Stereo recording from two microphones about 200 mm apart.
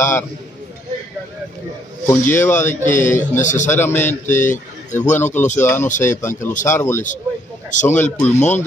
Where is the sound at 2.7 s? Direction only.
40° left (ahead or behind).